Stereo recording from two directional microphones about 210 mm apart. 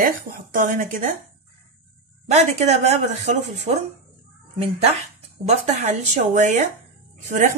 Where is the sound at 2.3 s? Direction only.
30° right (ahead or behind).